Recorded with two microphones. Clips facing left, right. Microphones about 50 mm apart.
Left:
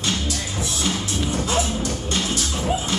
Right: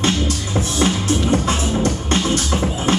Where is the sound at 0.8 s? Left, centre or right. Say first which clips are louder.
Right 7 dB; right.